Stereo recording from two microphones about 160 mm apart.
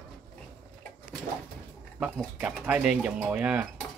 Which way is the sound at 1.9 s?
5° right (ahead or behind).